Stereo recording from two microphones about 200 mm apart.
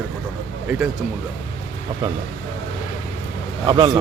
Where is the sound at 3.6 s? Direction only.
20° right (ahead or behind).